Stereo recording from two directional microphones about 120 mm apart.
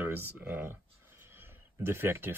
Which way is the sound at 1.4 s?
20° right (ahead or behind).